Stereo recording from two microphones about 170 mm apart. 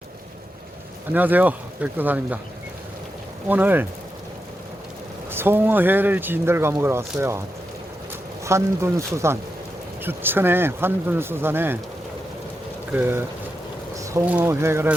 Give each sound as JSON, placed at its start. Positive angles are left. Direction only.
{"t": 1.1, "sound": "speech", "side_deg": -10}
{"t": 3.5, "sound": "speech", "side_deg": -10}
{"t": 5.3, "sound": "speech", "side_deg": -15}
{"t": 8.4, "sound": "speech", "side_deg": -15}
{"t": 12.9, "sound": "speech", "side_deg": -10}